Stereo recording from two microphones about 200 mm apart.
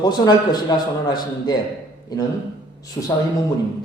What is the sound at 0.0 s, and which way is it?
A man's voice, 20° left (ahead or behind).